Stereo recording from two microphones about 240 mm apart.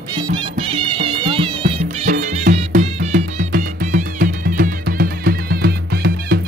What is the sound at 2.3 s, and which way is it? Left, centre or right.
Music, right.